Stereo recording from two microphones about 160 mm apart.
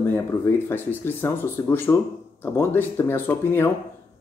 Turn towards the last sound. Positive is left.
turn(degrees=15)  # may be behind; listen again after turning